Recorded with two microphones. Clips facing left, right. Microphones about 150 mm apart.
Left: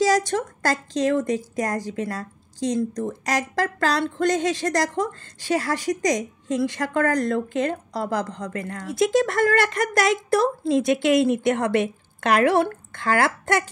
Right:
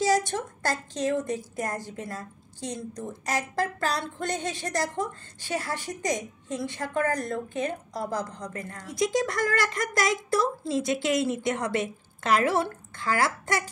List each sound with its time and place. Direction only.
0.0 s speech: 90° left
9.1 s a woman's voice: 65° left (ahead or behind)